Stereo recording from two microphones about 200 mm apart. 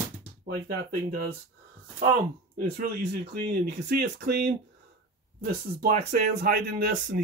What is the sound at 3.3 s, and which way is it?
Speech, 50° right (ahead or behind).